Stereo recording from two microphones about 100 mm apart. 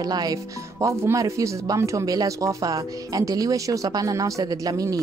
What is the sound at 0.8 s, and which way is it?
Speech, 30° right (ahead or behind).